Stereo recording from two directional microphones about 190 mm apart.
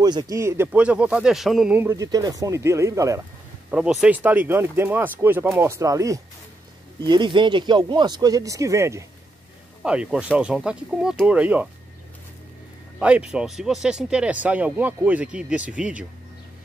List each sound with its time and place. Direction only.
0.0 s speech: 20° right (ahead or behind); by 1.8 s centre (ahead or behind)
1.8 s speech: 15° right (ahead or behind)
3.7 s speech: 5° right (ahead or behind)
13.0 s speech: 5° right (ahead or behind)